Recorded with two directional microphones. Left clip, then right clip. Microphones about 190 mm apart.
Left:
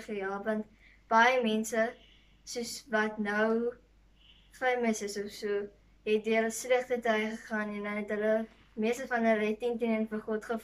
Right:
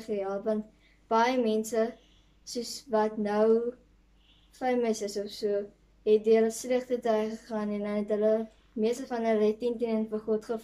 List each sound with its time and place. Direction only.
0.0 s a woman's voice: 25° right (ahead or behind)
4.6 s a woman's voice: 25° right (ahead or behind)